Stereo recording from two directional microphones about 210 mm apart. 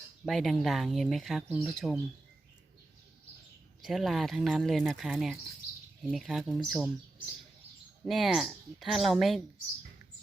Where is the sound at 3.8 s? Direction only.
Centre (ahead or behind).